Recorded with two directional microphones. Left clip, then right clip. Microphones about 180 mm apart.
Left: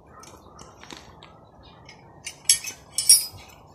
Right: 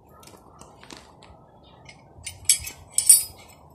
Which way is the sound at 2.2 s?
Centre (ahead or behind).